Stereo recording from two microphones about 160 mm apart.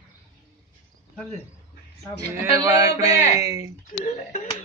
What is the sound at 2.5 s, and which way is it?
Speech, 15° right (ahead or behind).